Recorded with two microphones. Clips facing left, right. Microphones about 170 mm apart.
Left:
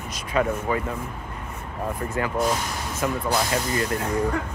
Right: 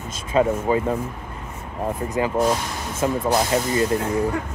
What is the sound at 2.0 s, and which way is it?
Speech, 20° right (ahead or behind).